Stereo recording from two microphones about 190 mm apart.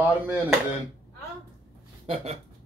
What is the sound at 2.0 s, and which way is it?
Speech, 30° right (ahead or behind).